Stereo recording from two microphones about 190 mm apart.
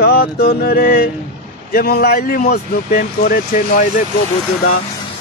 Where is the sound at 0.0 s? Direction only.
55° left (ahead or behind).